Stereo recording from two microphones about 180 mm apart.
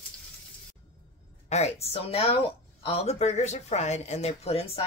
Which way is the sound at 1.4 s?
35° left (ahead or behind).